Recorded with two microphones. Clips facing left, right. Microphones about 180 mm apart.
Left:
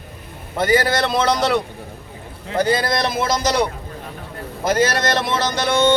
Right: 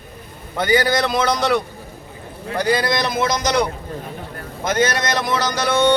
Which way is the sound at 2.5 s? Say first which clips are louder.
Even; 25° left (ahead or behind).